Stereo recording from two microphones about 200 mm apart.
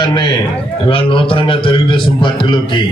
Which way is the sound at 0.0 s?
20° left (ahead or behind).